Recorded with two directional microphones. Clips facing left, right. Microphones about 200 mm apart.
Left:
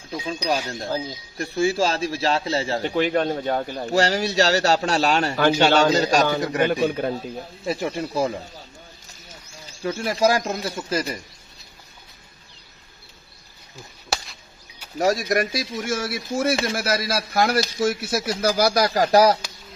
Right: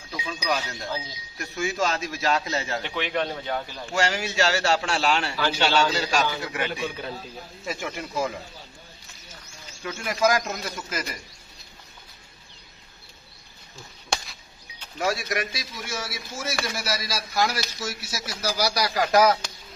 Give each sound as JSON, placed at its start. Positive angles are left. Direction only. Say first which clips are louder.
{"t": 0.3, "sound": "speech", "louder": "left 4 dB", "side_deg": 30}
{"t": 0.7, "sound": "speech", "louder": "left 6 dB", "side_deg": 45}
{"t": 3.9, "sound": "speech", "louder": "left 5 dB", "side_deg": 35}
{"t": 9.7, "sound": "speech", "louder": "left 6 dB", "side_deg": 35}
{"t": 14.1, "sound": "a sound", "louder": "left 1 dB", "side_deg": 5}
{"t": 15.0, "sound": "speech", "louder": "left 6 dB", "side_deg": 40}